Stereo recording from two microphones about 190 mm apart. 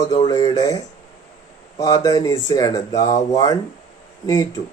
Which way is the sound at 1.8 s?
20° left (ahead or behind).